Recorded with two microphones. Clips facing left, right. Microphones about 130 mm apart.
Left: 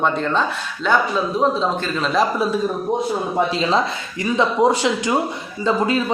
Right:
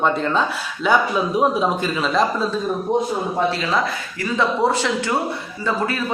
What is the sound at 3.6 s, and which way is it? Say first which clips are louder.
Speech: left 2 dB; 25° left (ahead or behind).